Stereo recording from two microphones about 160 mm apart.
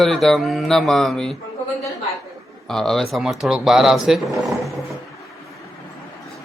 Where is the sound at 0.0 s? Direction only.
Centre (ahead or behind).